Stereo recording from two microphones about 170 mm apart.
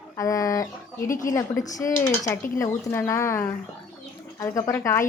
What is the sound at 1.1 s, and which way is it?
Speech, 50° left (ahead or behind).